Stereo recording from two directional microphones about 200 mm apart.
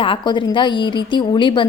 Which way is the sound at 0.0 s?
25° left (ahead or behind).